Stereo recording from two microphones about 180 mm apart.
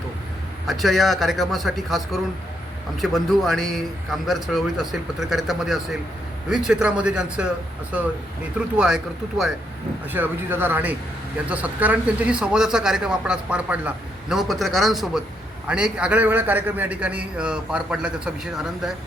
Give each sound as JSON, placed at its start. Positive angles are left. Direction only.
{"t": 0.7, "sound": "a man's voice", "side_deg": 0}
{"t": 8.5, "sound": "a man's voice", "side_deg": -5}
{"t": 10.1, "sound": "a man's voice", "side_deg": -10}